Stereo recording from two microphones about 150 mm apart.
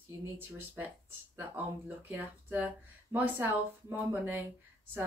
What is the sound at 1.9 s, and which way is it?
Speech, 15° right (ahead or behind).